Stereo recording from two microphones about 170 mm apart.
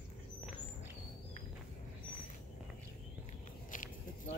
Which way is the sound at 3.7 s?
50° left (ahead or behind).